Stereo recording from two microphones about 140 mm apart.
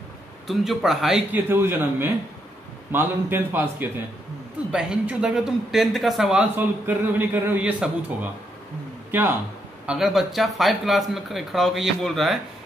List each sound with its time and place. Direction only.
0.5 s speech: centre (ahead or behind)
1.3 s speech: 15° right (ahead or behind)
9.8 s speech: centre (ahead or behind)